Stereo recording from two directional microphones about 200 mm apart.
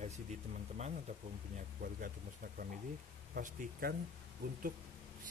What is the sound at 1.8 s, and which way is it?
Speech, 45° right (ahead or behind).